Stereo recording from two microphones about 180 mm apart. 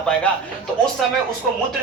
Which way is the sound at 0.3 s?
5° left (ahead or behind).